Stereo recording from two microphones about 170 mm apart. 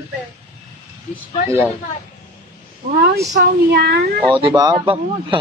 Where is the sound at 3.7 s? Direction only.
65° right (ahead or behind).